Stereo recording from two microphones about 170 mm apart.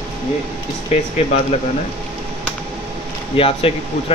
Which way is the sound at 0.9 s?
40° left (ahead or behind).